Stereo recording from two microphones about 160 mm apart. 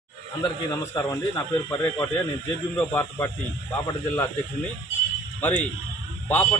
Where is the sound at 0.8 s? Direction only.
20° left (ahead or behind).